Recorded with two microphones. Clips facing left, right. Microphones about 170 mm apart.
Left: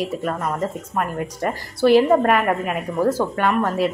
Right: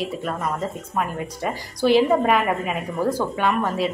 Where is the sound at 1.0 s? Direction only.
Centre (ahead or behind).